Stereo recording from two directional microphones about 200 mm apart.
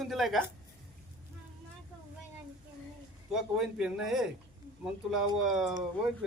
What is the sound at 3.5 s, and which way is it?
Speech, centre (ahead or behind).